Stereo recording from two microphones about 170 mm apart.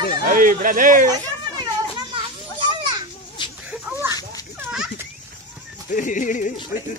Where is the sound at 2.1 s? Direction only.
30° right (ahead or behind).